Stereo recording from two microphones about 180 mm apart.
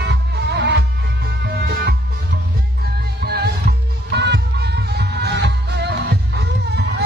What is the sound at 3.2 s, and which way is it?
Music, 60° right (ahead or behind).